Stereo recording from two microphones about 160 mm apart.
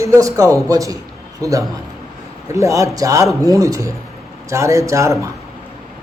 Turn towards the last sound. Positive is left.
turn(degrees=-20)  # may be behind; listen again after turning